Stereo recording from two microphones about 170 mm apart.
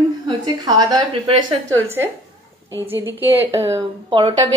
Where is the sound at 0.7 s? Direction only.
25° right (ahead or behind).